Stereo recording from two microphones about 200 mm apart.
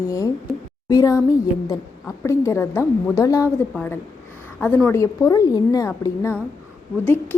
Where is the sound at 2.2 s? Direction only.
15° left (ahead or behind).